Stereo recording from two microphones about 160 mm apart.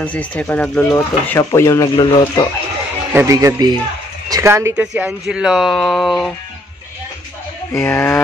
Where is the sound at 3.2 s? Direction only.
20° right (ahead or behind).